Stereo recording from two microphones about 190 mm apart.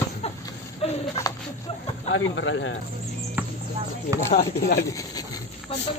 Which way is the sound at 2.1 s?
80° left.